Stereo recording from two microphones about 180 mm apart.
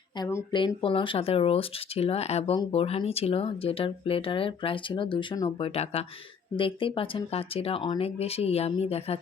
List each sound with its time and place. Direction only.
0.2 s speech: 15° left (ahead or behind)
0.5 s speech: 25° left (ahead or behind)